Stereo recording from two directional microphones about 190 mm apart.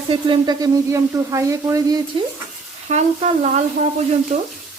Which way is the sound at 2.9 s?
35° right (ahead or behind).